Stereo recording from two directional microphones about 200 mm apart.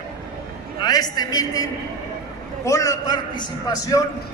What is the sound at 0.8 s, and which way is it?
A man's voice, 20° left (ahead or behind).